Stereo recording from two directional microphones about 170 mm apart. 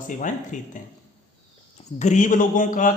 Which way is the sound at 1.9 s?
45° left (ahead or behind).